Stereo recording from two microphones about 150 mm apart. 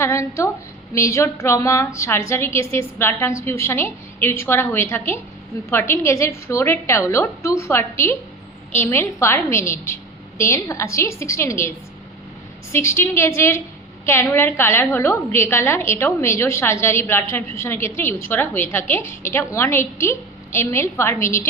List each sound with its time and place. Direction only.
0.0 s a woman's voice: 20° left (ahead or behind)
12.7 s a woman's voice: 15° left (ahead or behind)